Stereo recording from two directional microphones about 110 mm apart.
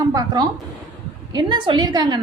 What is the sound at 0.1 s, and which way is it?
A woman's voice, 35° right (ahead or behind).